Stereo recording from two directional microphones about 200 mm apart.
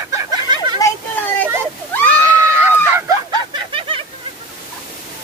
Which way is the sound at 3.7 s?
25° right (ahead or behind).